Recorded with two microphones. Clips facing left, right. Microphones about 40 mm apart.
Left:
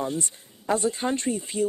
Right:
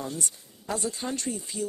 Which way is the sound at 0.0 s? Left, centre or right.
Left.